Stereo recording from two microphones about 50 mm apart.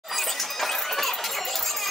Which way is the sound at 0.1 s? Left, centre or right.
Centre.